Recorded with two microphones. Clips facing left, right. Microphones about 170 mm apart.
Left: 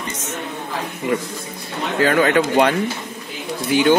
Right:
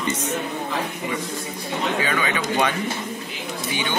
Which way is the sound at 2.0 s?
55° left (ahead or behind).